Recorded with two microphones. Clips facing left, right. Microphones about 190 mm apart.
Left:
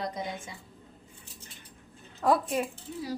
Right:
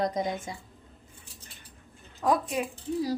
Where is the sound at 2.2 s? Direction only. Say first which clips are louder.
Left 1 dB; 5° right (ahead or behind).